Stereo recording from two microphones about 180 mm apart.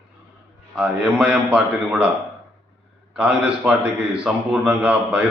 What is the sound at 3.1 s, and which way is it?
A man's voice, 5° right (ahead or behind).